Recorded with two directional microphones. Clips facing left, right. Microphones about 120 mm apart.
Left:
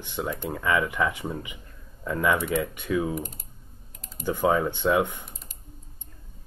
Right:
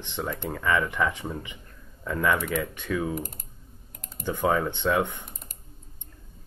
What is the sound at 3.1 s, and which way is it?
Typing, 50° right (ahead or behind).